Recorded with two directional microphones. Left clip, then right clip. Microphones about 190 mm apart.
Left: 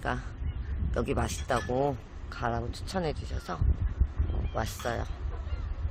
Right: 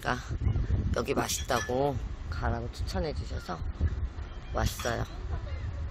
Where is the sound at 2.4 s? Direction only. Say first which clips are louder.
Left 3 dB; 15° left (ahead or behind).